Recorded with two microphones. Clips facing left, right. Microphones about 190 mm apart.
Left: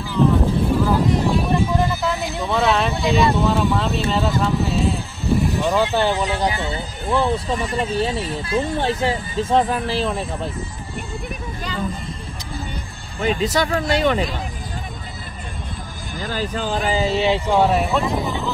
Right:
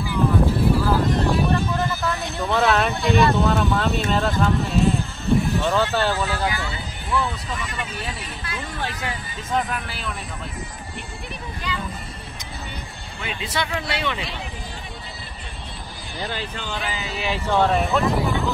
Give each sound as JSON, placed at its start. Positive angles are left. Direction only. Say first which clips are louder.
{"t": 0.0, "sound": "vehicle", "louder": "left 3 dB", "side_deg": -10}
{"t": 2.0, "sound": "a sound", "louder": "left 2 dB", "side_deg": 0}
{"t": 3.3, "sound": "vehicle", "louder": "left 1 dB", "side_deg": 0}
{"t": 4.1, "sound": "a sound", "louder": "left 1 dB", "side_deg": 5}
{"t": 5.6, "sound": "speech", "louder": "left 3 dB", "side_deg": 15}
{"t": 6.4, "sound": "speech", "louder": "left 4 dB", "side_deg": 35}
{"t": 13.2, "sound": "speech", "louder": "left 9 dB", "side_deg": 40}
{"t": 16.2, "sound": "speech", "louder": "left 5 dB", "side_deg": 45}
{"t": 17.0, "sound": "speech", "louder": "left 10 dB", "side_deg": 25}
{"t": 17.5, "sound": "speech", "louder": "right 2 dB", "side_deg": 10}
{"t": 18.2, "sound": "a sound", "louder": "right 1 dB", "side_deg": 10}